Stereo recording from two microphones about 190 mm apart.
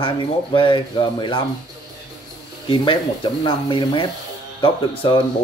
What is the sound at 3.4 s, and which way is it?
Speech, 25° left (ahead or behind).